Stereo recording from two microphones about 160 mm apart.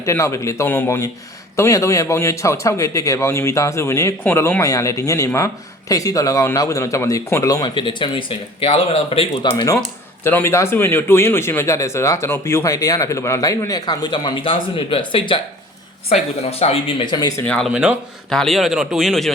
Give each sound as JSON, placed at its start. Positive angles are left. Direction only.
{"t": 0.0, "sound": "a man's voice", "side_deg": 20}
{"t": 10.2, "sound": "a man's voice", "side_deg": 15}
{"t": 17.4, "sound": "speech", "side_deg": 5}
{"t": 17.7, "sound": "a man's voice", "side_deg": -5}